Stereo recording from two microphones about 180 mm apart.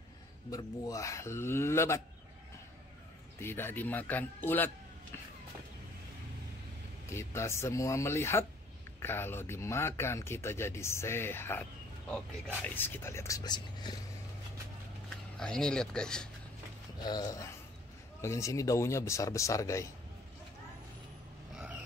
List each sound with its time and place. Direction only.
0.5 s speech: 20° left (ahead or behind)
3.3 s speech: 10° left (ahead or behind)
7.1 s speech: 15° left (ahead or behind)
15.3 s speech: 5° left (ahead or behind)
17.0 s speech: 20° left (ahead or behind)